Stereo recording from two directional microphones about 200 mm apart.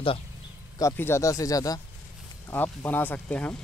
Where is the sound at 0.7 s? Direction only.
15° left (ahead or behind).